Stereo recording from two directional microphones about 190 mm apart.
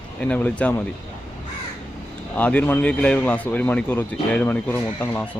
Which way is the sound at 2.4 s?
10° left (ahead or behind).